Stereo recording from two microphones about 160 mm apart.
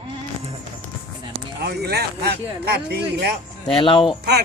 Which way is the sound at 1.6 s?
90° right.